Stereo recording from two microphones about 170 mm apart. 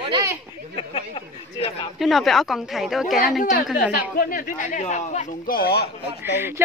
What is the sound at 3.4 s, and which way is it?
A woman's voice, 60° left (ahead or behind).